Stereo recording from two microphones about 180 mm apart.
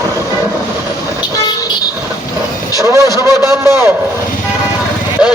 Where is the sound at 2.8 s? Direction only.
15° right (ahead or behind).